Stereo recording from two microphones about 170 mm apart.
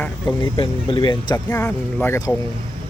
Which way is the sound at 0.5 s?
30° left (ahead or behind).